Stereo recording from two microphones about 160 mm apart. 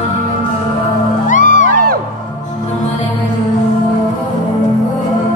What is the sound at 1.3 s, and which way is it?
Music, 55° left (ahead or behind).